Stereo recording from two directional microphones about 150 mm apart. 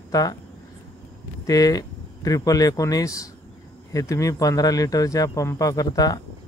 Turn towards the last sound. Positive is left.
turn(degrees=25)  # may be behind; listen again after turning